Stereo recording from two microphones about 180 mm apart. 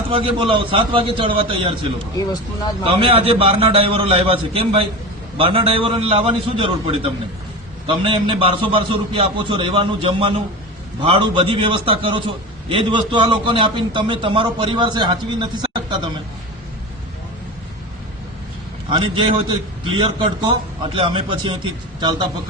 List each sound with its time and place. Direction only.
0.1 s a man's voice: 30° right (ahead or behind)
18.9 s a man's voice: 30° right (ahead or behind)